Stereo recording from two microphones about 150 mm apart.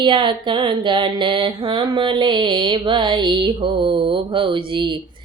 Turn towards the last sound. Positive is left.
turn(degrees=-30)  # may be behind; listen again after turning